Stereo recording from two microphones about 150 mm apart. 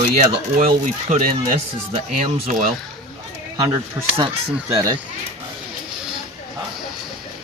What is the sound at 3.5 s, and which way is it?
Speech, 25° right (ahead or behind).